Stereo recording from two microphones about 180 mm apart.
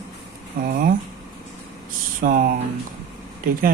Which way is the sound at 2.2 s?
50° right (ahead or behind).